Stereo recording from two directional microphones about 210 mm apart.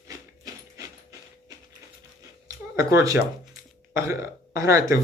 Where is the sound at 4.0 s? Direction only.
15° right (ahead or behind).